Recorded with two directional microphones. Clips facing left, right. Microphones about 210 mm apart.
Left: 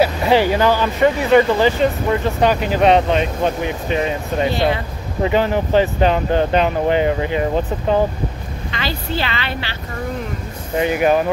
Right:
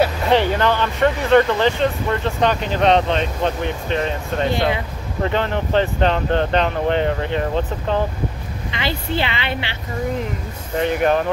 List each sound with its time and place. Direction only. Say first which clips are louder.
0.0 s speech: left 2 dB; 5° left (ahead or behind)
8.7 s a woman's voice: right 1 dB; 20° right (ahead or behind)
10.8 s speech: left 2 dB; 5° left (ahead or behind)